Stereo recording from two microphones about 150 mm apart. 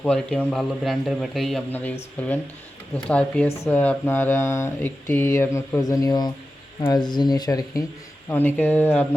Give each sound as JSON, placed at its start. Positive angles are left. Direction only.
{"t": 0.0, "sound": "speech", "side_deg": 5}
{"t": 1.7, "sound": "speech", "side_deg": 10}
{"t": 8.3, "sound": "speech", "side_deg": 10}